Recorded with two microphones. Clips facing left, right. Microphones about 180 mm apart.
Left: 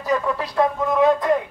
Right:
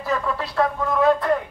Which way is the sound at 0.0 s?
15° left (ahead or behind).